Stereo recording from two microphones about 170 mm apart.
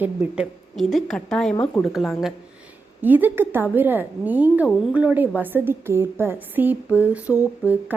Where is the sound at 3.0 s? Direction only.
10° right (ahead or behind).